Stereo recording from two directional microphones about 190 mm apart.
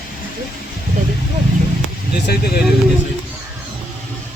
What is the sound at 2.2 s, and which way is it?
Speech, 55° left (ahead or behind).